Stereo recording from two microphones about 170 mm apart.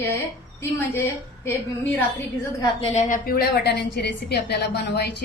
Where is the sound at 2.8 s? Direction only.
45° left (ahead or behind); by 5.1 s 75° left (ahead or behind).